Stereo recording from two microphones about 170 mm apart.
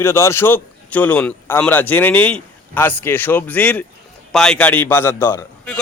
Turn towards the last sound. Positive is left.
turn(degrees=10)  # may be behind; listen again after turning